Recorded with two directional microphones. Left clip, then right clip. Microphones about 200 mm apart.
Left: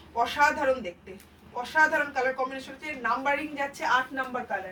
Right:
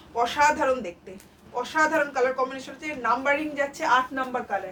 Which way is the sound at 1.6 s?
20° right (ahead or behind).